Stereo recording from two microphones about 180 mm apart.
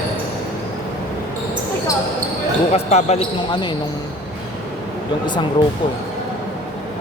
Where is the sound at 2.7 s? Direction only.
40° left (ahead or behind).